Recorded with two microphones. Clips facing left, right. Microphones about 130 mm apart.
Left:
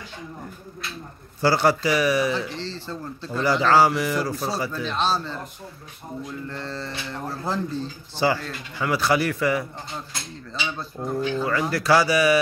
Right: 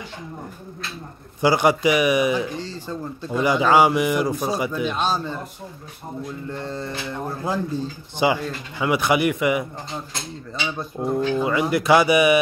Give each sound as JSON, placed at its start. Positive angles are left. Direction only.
{"t": 1.4, "sound": "speech", "side_deg": -15}
{"t": 6.5, "sound": "speech", "side_deg": -15}
{"t": 10.8, "sound": "speech", "side_deg": -20}